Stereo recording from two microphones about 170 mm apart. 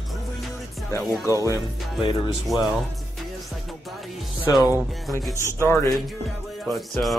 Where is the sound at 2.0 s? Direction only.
30° left (ahead or behind).